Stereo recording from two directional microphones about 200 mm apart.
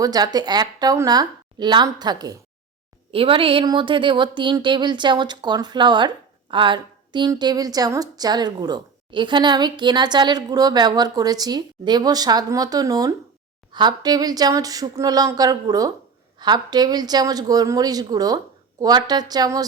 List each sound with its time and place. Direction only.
0.0 s a woman's voice: 20° right (ahead or behind)